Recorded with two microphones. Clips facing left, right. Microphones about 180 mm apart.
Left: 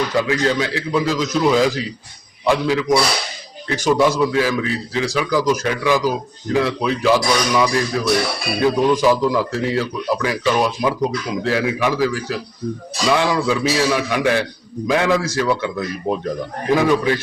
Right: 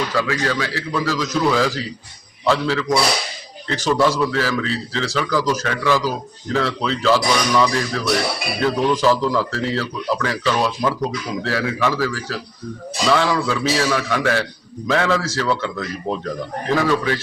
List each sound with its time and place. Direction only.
0.1 s a man's voice: 20° left (ahead or behind)